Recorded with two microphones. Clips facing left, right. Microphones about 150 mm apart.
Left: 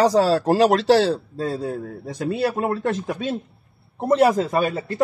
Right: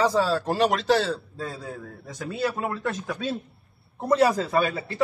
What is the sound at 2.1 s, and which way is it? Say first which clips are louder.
Speech: left 5 dB; 65° left (ahead or behind).